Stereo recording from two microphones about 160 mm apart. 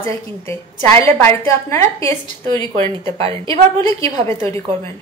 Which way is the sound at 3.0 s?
35° right (ahead or behind).